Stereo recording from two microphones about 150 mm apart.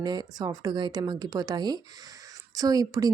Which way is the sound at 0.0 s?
30° right (ahead or behind).